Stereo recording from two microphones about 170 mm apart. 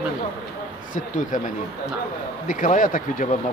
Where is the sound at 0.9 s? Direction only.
50° left (ahead or behind).